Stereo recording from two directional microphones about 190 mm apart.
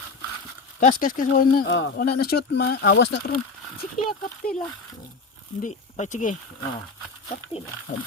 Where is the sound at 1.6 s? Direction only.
70° left (ahead or behind).